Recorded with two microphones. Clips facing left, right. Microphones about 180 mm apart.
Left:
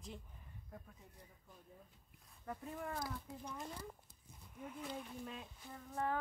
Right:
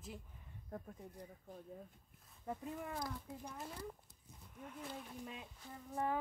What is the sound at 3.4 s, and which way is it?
A woman's voice, 5° right (ahead or behind).